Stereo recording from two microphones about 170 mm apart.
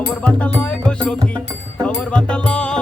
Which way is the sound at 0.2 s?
10° left (ahead or behind).